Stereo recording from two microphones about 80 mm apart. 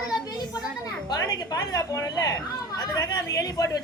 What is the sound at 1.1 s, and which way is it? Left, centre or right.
Speech, left.